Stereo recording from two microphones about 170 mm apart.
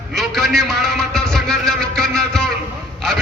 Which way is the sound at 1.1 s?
5° left (ahead or behind).